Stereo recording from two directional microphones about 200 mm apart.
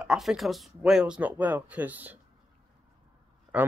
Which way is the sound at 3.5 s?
5° right (ahead or behind).